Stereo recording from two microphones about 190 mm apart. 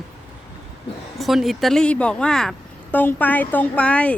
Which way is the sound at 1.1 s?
Centre (ahead or behind).